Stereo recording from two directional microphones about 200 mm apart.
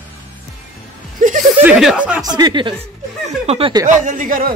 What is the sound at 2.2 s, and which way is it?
Speech, 20° right (ahead or behind).